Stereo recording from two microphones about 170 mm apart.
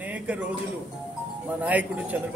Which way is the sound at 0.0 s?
10° right (ahead or behind).